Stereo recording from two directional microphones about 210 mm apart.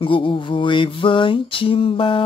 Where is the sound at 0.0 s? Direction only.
25° left (ahead or behind).